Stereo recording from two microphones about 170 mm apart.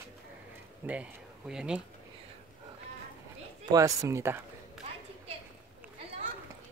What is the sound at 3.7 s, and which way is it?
Speech, 20° right (ahead or behind).